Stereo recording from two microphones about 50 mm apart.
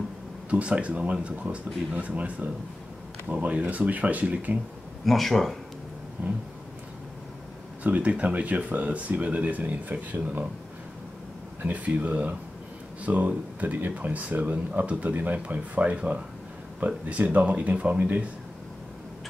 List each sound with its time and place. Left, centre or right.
0.5 s speech: right
5.0 s speech: centre
7.8 s speech: right
11.6 s speech: right